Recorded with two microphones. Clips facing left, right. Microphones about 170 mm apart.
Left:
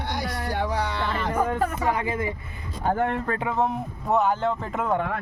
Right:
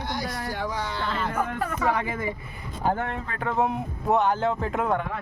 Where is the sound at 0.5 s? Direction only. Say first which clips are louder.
Left 7 dB; 65° left (ahead or behind).